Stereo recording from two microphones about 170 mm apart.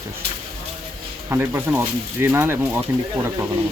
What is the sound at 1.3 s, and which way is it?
Speech, 15° right (ahead or behind).